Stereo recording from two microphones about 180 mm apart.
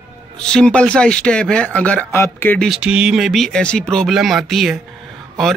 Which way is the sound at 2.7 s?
5° right (ahead or behind).